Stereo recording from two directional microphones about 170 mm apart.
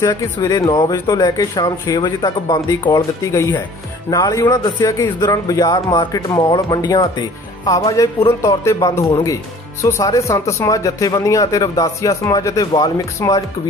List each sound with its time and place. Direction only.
0.0 s speech: 20° left (ahead or behind)